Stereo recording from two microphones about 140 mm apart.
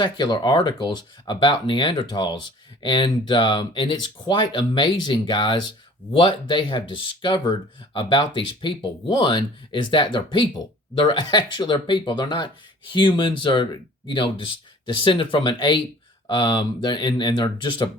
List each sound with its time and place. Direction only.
0.0 s speech: 35° left (ahead or behind)